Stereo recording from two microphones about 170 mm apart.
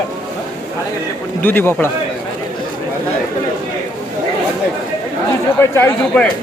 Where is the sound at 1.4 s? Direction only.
10° left (ahead or behind).